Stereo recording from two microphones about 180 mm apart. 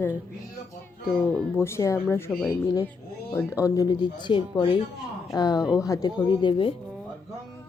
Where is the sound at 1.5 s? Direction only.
15° left (ahead or behind).